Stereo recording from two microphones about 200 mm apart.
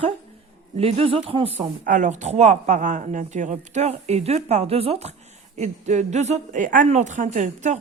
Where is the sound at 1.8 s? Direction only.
40° right (ahead or behind).